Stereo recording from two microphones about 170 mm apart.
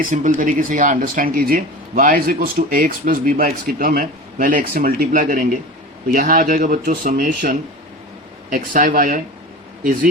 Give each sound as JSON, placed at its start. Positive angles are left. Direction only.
{"t": 0.1, "sound": "speech", "side_deg": -50}